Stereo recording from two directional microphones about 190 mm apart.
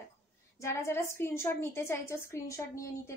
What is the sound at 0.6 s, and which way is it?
A woman's voice, 15° left (ahead or behind).